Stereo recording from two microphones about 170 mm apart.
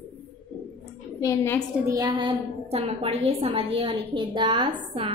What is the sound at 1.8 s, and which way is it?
A woman's voice, 20° right (ahead or behind).